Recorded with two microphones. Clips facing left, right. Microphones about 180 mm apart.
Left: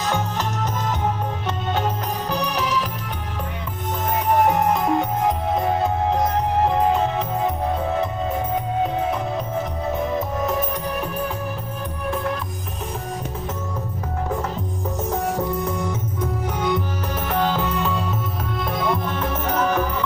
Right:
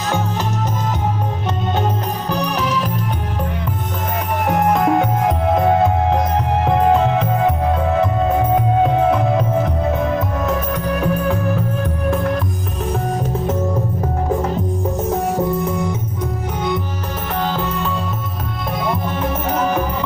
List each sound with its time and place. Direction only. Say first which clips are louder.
4.5 s music: right 3 dB; 60° right (ahead or behind)
8.8 s music: right 8 dB; 65° right (ahead or behind)
10.1 s music: right 3 dB; 80° right
15.6 s music: right 4 dB; centre (ahead or behind)
17.4 s music: right 1 dB; 5° left (ahead or behind)
18.8 s music: right 3 dB; 5° right (ahead or behind)